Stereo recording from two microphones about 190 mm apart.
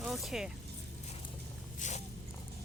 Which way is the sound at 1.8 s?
40° left (ahead or behind).